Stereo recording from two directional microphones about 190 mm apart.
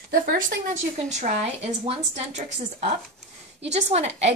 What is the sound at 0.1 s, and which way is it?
Speech, 50° right (ahead or behind).